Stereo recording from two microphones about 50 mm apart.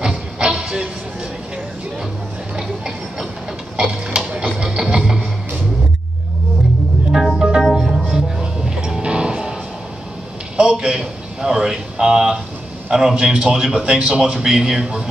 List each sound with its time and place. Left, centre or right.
0.0 s music: centre
3.7 s a sound: centre
4.3 s music: centre
7.3 s organ: centre
7.7 s music: centre
8.1 s music: centre
10.5 s a sound: centre
12.9 s a man's voice: centre